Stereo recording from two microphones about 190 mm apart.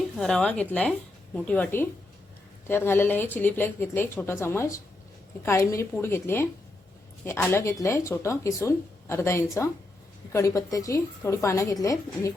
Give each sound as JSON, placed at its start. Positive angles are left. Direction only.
{"t": 0.2, "sound": "a woman's voice", "side_deg": 5}